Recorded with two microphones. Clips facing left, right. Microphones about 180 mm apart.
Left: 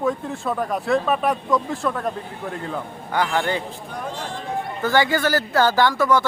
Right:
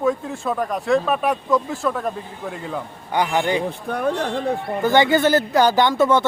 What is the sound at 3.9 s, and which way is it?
Speech, 65° right (ahead or behind).